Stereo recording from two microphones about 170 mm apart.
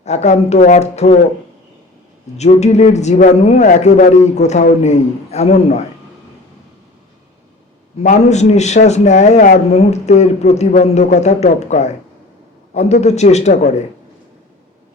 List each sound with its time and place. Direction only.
0.0 s a man's voice: 40° left (ahead or behind)
2.4 s a man's voice: 40° left (ahead or behind)
8.0 s a man's voice: 40° left (ahead or behind)